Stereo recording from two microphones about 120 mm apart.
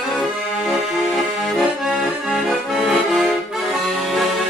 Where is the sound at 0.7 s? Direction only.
Centre (ahead or behind).